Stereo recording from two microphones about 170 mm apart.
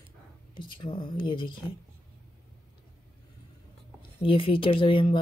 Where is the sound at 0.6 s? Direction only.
30° left (ahead or behind).